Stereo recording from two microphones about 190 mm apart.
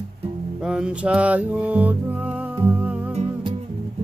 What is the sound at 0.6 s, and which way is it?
Music, 5° right (ahead or behind).